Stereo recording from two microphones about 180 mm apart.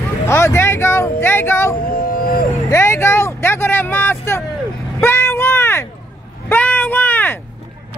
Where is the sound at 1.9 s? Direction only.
55° left (ahead or behind).